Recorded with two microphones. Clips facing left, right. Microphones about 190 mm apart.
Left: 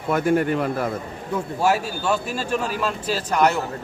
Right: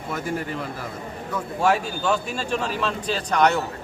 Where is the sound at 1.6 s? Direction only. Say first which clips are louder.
Even; 5° left (ahead or behind).